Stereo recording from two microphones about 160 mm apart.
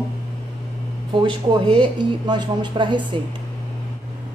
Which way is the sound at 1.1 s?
30° right (ahead or behind).